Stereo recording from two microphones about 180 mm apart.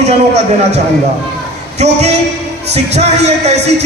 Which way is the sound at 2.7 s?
35° right (ahead or behind).